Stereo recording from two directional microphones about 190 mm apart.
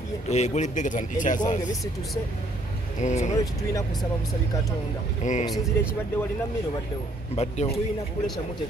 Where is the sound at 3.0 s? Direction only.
40° left (ahead or behind).